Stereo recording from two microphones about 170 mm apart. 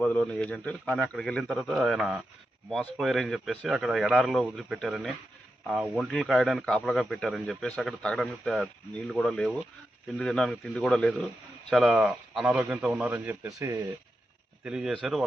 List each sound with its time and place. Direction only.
0.0 s a man's voice: 5° left (ahead or behind); by 13.8 s 15° right (ahead or behind)
14.6 s speech: 5° right (ahead or behind)